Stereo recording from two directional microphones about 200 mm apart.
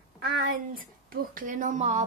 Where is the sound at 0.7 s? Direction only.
45° right (ahead or behind).